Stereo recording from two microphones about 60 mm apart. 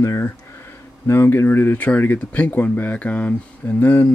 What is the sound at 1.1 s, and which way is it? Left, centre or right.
Speech, left.